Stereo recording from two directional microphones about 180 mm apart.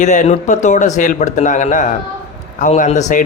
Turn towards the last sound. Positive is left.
turn(degrees=40)  # may be behind; listen again after turning